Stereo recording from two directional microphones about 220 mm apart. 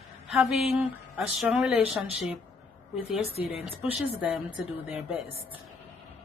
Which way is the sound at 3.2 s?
25° left (ahead or behind).